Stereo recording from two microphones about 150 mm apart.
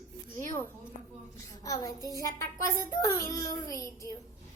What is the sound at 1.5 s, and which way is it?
A child's voice, 25° left (ahead or behind).